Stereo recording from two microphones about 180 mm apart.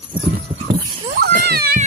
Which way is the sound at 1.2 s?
60° right (ahead or behind).